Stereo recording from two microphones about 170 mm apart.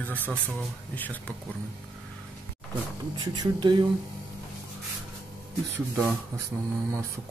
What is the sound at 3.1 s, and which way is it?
Speech, 25° right (ahead or behind).